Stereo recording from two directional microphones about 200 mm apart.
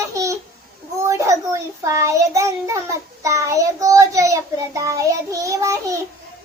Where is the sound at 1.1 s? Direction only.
15° right (ahead or behind).